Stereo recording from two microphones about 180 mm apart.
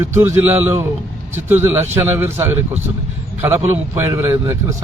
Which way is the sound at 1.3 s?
15° right (ahead or behind).